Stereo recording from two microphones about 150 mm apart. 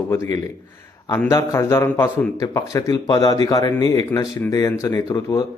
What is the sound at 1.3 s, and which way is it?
A man's voice, 20° left (ahead or behind).